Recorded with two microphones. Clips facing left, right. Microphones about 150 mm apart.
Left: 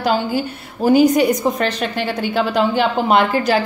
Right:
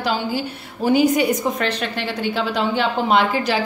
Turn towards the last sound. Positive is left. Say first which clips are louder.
# left 3 dB
turn(degrees=45)  # may be behind; listen again after turning